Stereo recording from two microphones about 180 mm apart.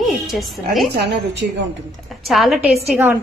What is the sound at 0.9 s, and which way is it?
Speech, 70° right (ahead or behind).